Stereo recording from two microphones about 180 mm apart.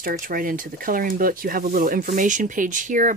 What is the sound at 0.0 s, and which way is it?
Speech, 50° right (ahead or behind).